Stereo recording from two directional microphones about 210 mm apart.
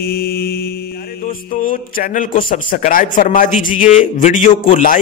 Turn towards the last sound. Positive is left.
turn(degrees=35)  # may be behind; listen again after turning